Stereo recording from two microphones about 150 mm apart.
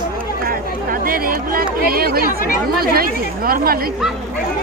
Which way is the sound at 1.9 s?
85° right.